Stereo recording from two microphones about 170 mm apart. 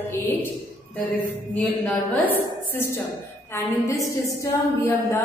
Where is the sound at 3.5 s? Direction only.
20° left (ahead or behind).